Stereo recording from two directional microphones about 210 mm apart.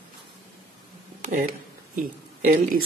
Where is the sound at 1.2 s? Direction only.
40° right (ahead or behind).